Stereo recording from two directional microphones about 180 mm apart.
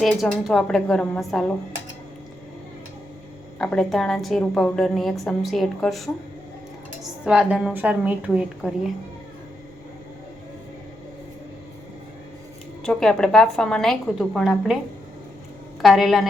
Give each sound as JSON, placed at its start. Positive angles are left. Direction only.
{"t": 0.0, "sound": "a woman's voice", "side_deg": 0}
{"t": 3.6, "sound": "a woman's voice", "side_deg": 5}
{"t": 7.3, "sound": "a woman's voice", "side_deg": -5}
{"t": 12.8, "sound": "a woman's voice", "side_deg": 5}
{"t": 15.8, "sound": "a woman's voice", "side_deg": 0}